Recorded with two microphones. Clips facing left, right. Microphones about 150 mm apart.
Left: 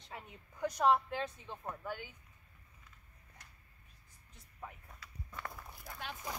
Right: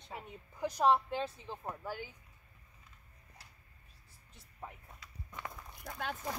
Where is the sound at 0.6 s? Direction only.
30° right (ahead or behind).